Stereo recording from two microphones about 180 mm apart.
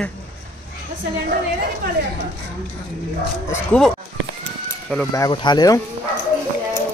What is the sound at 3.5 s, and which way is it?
Speech, 5° left (ahead or behind).